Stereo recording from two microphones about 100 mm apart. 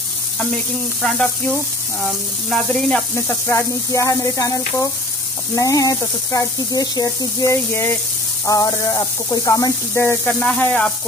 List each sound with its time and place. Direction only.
1.0 s sizzle: centre (ahead or behind)
3.2 s speech: 25° left (ahead or behind)
8.5 s speech: 35° left (ahead or behind)
10.4 s sizzle: 10° left (ahead or behind)